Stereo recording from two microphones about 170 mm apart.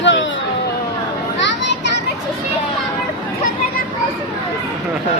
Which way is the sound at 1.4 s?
90° left.